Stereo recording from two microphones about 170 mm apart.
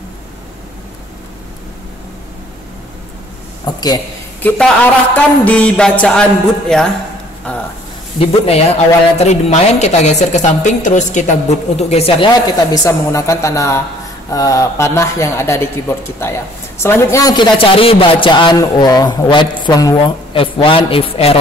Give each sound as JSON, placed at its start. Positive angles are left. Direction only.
{"t": 3.6, "sound": "a man's voice", "side_deg": 25}
{"t": 4.4, "sound": "a man's voice", "side_deg": 10}
{"t": 5.1, "sound": "music", "side_deg": 10}
{"t": 6.7, "sound": "a man's voice", "side_deg": 5}
{"t": 7.5, "sound": "a sound", "side_deg": 10}
{"t": 8.2, "sound": "speech", "side_deg": 35}
{"t": 12.3, "sound": "a man's voice", "side_deg": 20}